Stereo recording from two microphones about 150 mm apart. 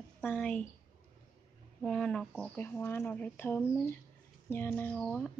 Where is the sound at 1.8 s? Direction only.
5° left (ahead or behind).